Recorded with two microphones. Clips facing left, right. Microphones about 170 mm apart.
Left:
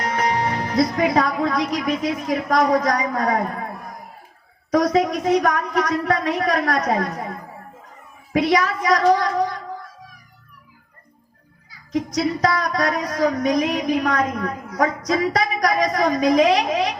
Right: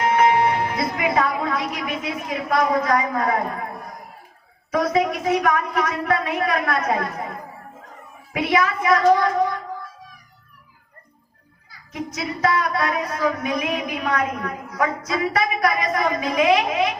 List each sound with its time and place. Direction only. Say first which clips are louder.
0.0 s speech: right 5 dB; 40° left (ahead or behind)
4.7 s speech: left 3 dB; 40° left (ahead or behind)
8.3 s speech: left 2 dB; 40° left (ahead or behind)
11.9 s speech: left 7 dB; 40° left (ahead or behind)